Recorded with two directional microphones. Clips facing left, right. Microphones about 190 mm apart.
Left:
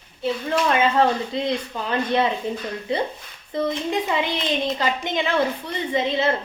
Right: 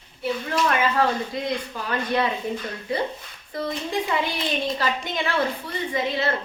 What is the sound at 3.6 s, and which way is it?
Speech, 20° left (ahead or behind).